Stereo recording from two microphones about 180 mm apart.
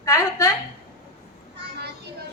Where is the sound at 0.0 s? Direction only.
15° left (ahead or behind).